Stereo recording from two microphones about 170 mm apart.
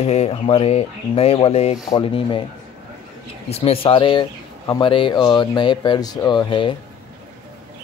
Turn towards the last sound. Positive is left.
turn(degrees=30)  # may be behind; listen again after turning